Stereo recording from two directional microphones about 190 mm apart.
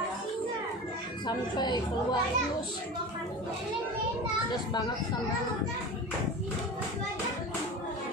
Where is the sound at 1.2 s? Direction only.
20° left (ahead or behind).